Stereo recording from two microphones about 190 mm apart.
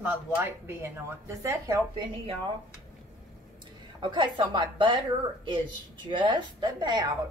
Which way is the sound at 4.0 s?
25° right (ahead or behind).